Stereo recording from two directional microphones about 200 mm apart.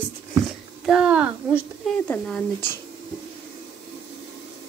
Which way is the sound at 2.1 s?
5° left (ahead or behind).